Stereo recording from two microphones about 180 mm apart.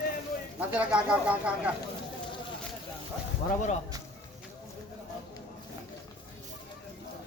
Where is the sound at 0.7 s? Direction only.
5° right (ahead or behind).